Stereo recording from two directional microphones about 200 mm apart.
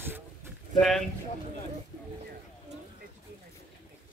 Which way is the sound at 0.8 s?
Centre (ahead or behind).